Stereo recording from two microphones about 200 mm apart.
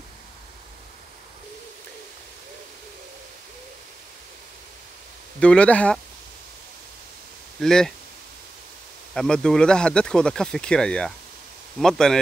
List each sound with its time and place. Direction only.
5.4 s speech: 5° left (ahead or behind)
7.6 s speech: 5° left (ahead or behind)
9.1 s speech: 5° left (ahead or behind)